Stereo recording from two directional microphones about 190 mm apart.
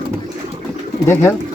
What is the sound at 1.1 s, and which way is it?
Speech, 10° left (ahead or behind).